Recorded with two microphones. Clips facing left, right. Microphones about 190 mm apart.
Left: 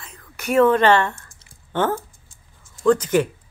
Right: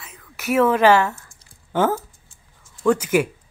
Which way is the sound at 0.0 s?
5° right (ahead or behind).